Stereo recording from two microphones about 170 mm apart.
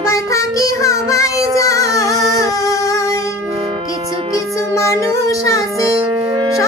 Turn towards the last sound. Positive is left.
turn(degrees=20)  # may be behind; listen again after turning